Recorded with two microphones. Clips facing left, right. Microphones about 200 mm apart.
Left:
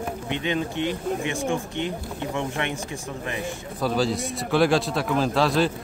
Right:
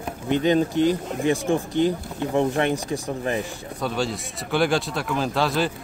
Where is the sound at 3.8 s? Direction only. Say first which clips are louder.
Left 3 dB; centre (ahead or behind).